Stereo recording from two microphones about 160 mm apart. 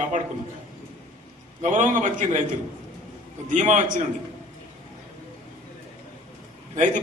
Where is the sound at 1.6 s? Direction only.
50° right (ahead or behind).